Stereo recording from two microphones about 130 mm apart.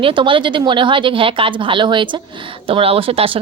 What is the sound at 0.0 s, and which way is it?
Speech, 40° right (ahead or behind).